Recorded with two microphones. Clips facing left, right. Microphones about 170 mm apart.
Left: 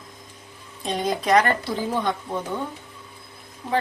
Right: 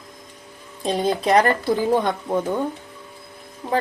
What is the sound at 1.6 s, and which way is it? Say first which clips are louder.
Speech: right 6 dB; 50° right (ahead or behind).